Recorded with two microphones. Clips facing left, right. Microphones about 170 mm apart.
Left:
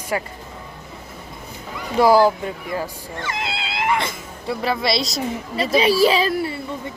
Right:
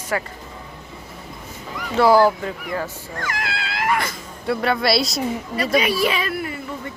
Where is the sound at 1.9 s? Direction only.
10° left (ahead or behind).